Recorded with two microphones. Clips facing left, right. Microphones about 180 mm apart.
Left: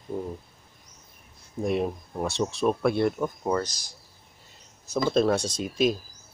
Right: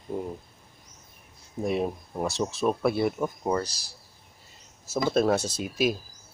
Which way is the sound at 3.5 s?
30° right (ahead or behind).